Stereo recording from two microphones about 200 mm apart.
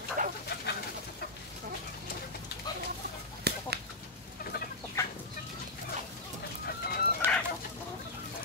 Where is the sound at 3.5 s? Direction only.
55° right (ahead or behind).